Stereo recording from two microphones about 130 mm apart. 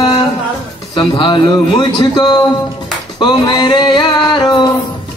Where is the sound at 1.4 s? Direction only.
30° left (ahead or behind).